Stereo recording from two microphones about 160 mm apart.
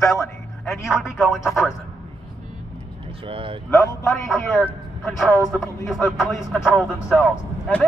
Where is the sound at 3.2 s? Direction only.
35° right (ahead or behind).